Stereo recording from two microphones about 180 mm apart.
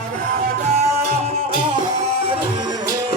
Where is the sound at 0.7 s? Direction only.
35° right (ahead or behind).